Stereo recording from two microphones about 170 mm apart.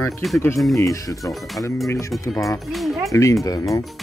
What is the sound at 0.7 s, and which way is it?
Speech, 20° left (ahead or behind).